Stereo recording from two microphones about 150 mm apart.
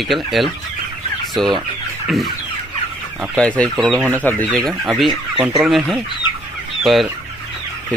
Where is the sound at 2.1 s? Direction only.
Centre (ahead or behind).